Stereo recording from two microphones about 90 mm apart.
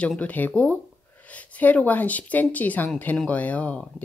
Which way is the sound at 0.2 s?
15° left (ahead or behind).